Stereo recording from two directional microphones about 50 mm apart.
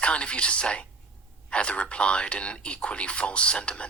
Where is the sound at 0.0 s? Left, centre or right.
Left.